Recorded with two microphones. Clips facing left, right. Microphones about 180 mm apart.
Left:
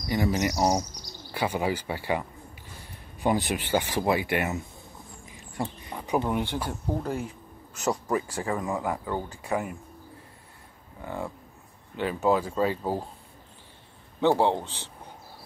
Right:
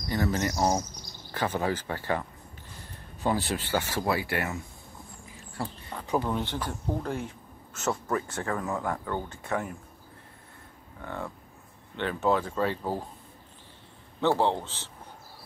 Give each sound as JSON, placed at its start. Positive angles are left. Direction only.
{"t": 0.1, "sound": "speech", "side_deg": 15}
{"t": 11.0, "sound": "speech", "side_deg": 15}
{"t": 14.2, "sound": "speech", "side_deg": 15}